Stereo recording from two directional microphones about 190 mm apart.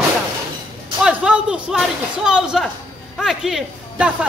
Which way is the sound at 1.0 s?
5° right (ahead or behind).